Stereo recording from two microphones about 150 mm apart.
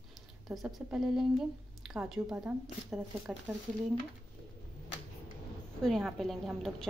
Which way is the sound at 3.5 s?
20° right (ahead or behind).